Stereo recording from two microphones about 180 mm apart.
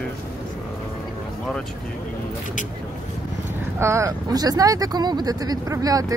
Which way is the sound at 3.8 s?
15° right (ahead or behind).